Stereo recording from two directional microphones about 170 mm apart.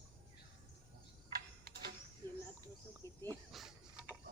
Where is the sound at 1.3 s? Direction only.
65° right (ahead or behind).